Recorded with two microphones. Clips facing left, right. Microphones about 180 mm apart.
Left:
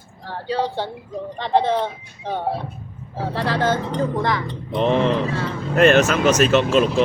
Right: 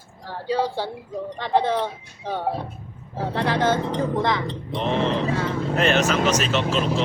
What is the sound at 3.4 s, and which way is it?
Speech, 20° right (ahead or behind).